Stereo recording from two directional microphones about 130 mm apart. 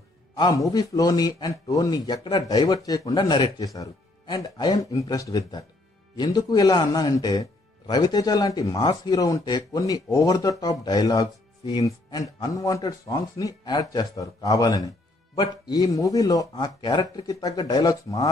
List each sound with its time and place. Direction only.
0.4 s a man's voice: 30° left (ahead or behind)